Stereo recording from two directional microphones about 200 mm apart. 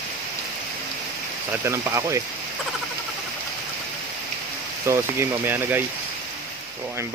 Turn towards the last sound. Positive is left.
turn(degrees=-10)  # may be behind; listen again after turning